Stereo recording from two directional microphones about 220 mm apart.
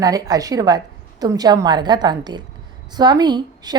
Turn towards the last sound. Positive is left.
turn(degrees=-20)  # may be behind; listen again after turning